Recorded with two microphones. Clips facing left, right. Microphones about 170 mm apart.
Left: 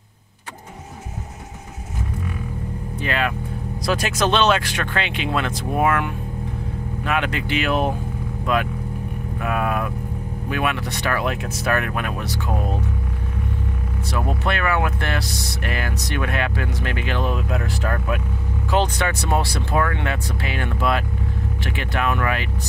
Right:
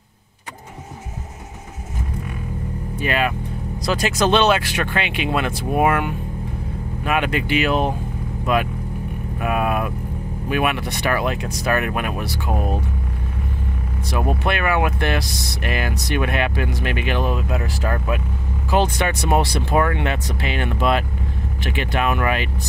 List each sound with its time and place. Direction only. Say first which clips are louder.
3.0 s speech: right 2 dB; 10° right (ahead or behind)
3.8 s speech: right 2 dB; centre (ahead or behind)
9.4 s vehicle: right 2 dB; 15° right (ahead or behind)
10.5 s speech: right 3 dB; 15° right (ahead or behind)
11.2 s speech: right 1 dB; centre (ahead or behind); by 12.7 s 15° right (ahead or behind)
14.1 s speech: right 2 dB; 15° right (ahead or behind)
17.3 s speech: right 1 dB; 5° right (ahead or behind)
18.9 s speech: right 3 dB; 20° right (ahead or behind)